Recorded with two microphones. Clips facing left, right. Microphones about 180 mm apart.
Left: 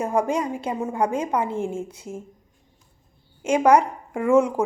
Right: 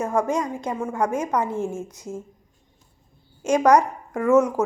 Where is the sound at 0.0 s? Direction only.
15° left (ahead or behind).